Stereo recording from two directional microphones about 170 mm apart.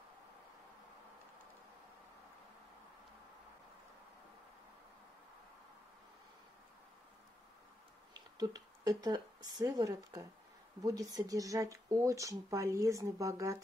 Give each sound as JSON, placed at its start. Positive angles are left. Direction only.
{"t": 8.1, "sound": "speech", "side_deg": -20}